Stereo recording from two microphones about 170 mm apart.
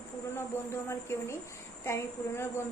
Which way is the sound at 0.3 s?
15° left (ahead or behind).